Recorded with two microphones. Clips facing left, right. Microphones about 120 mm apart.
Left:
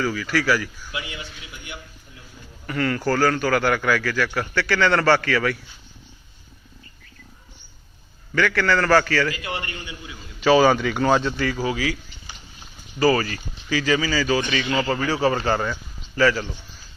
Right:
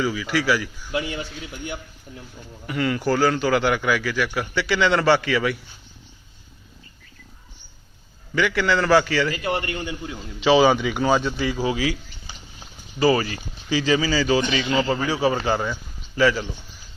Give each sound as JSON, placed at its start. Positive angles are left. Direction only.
{"t": 0.0, "sound": "a man's voice", "side_deg": -15}
{"t": 0.9, "sound": "a man's voice", "side_deg": -40}
{"t": 2.6, "sound": "a man's voice", "side_deg": -15}
{"t": 8.4, "sound": "a man's voice", "side_deg": -15}
{"t": 9.3, "sound": "a man's voice", "side_deg": -40}
{"t": 10.4, "sound": "a man's voice", "side_deg": -20}
{"t": 13.0, "sound": "a man's voice", "side_deg": -20}